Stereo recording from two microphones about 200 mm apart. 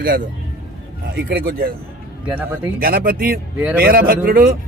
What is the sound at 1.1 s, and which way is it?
Speech, 50° right (ahead or behind).